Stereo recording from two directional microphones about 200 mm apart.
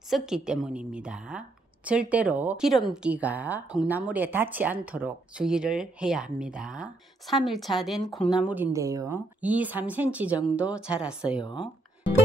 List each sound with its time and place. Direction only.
0.1 s a woman's voice: 5° right (ahead or behind)
11.4 s speech: 25° left (ahead or behind)